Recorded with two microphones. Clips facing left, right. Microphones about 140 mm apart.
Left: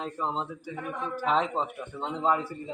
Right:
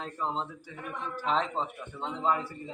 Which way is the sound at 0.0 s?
15° left (ahead or behind).